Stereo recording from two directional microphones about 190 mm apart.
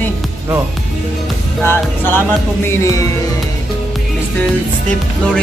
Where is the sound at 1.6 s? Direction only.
10° left (ahead or behind).